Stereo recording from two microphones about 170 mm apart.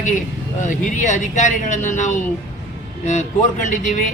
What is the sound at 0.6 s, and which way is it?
A man's voice, 45° left (ahead or behind).